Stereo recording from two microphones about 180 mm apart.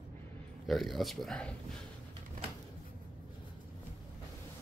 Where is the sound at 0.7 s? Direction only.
Centre (ahead or behind).